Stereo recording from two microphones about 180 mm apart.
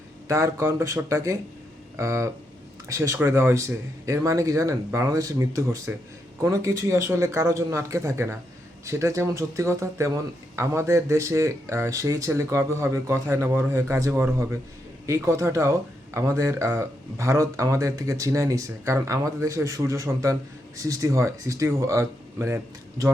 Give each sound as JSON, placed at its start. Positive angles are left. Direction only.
{"t": 0.3, "sound": "speech", "side_deg": -15}